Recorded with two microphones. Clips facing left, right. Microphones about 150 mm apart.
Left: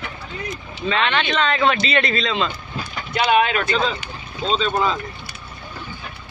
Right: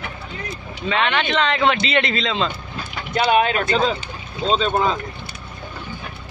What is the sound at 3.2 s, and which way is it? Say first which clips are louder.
Speech: even; 40° right (ahead or behind).